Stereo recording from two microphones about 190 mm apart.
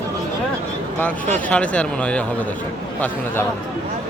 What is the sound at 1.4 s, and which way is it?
Speech, 5° left (ahead or behind).